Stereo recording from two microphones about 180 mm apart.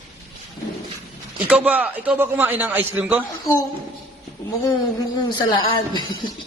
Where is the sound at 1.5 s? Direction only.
10° right (ahead or behind).